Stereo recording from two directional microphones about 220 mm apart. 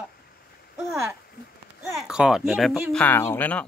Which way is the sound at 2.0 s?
5° right (ahead or behind).